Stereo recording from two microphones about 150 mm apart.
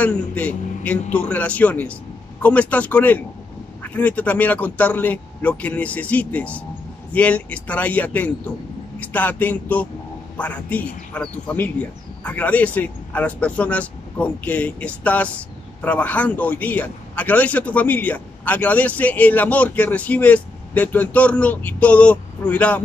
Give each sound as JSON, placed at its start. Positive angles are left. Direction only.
{"t": 0.0, "sound": "a man's voice", "side_deg": 10}